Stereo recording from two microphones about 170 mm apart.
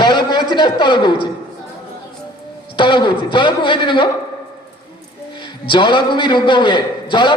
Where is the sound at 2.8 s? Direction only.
25° left (ahead or behind).